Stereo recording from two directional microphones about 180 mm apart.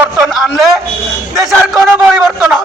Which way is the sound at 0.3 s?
Centre (ahead or behind).